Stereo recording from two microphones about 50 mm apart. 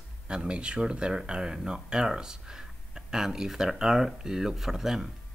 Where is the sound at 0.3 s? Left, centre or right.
Centre.